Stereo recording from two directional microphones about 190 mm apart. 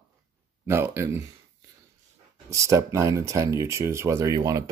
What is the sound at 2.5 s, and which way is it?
Speech, 15° right (ahead or behind).